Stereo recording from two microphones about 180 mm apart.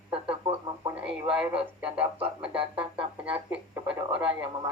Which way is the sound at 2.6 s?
30° right (ahead or behind).